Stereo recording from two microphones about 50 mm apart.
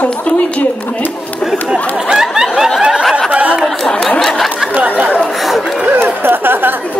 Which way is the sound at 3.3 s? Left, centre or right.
Right.